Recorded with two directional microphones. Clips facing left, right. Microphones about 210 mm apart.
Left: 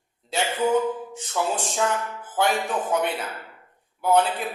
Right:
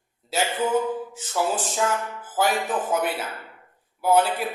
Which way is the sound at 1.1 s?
5° right (ahead or behind).